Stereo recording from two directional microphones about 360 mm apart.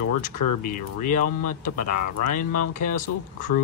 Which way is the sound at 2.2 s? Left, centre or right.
Left.